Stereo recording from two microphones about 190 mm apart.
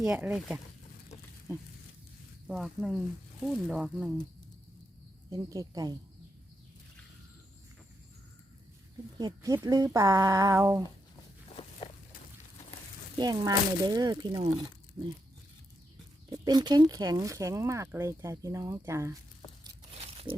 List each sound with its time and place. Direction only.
0.0 s speech: 5° right (ahead or behind)
1.5 s speech: 15° right (ahead or behind)
2.5 s speech: centre (ahead or behind)
5.3 s speech: 20° right (ahead or behind)
9.1 s speech: 20° right (ahead or behind)
11.4 s walk: 30° left (ahead or behind)
13.1 s speech: 20° right (ahead or behind)
16.3 s speech: 20° right (ahead or behind)